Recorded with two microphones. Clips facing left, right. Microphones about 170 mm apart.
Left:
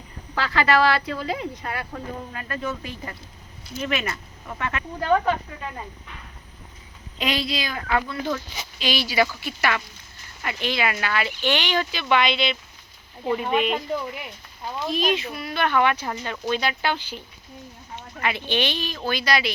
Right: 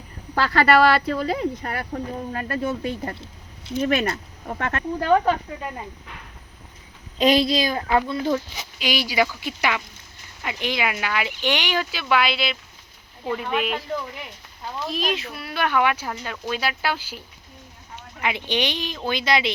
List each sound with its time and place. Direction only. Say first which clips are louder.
0.3 s speech: right 3 dB; 45° right (ahead or behind)
7.2 s speech: right 8 dB; 40° right (ahead or behind)
8.8 s speech: even; 15° right (ahead or behind)
13.3 s speech: left 2 dB; 5° left (ahead or behind); by 19.5 s 20° right (ahead or behind)